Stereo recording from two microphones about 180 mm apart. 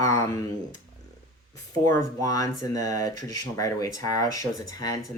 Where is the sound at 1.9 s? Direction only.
15° left (ahead or behind).